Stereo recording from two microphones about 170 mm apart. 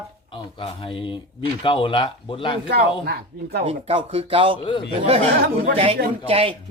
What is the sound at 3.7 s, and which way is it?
Speech, 35° right (ahead or behind).